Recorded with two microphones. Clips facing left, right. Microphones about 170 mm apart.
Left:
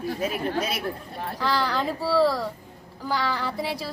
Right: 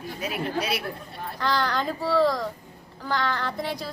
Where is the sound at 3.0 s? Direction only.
10° left (ahead or behind).